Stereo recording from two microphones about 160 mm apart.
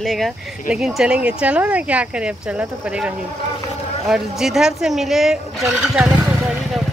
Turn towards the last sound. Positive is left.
turn(degrees=-5)  # may be behind; listen again after turning